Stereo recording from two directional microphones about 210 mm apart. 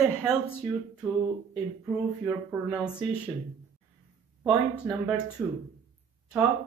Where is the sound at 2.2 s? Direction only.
5° right (ahead or behind).